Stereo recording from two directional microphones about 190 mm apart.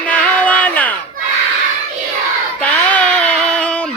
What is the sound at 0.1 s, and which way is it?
Music, 5° left (ahead or behind).